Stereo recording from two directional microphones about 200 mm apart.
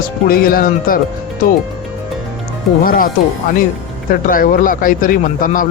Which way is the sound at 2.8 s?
45° left (ahead or behind).